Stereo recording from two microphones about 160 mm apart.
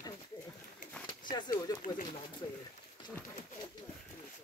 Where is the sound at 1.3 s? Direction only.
25° left (ahead or behind).